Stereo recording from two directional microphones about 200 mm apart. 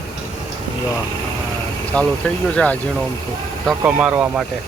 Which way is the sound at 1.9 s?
5° left (ahead or behind).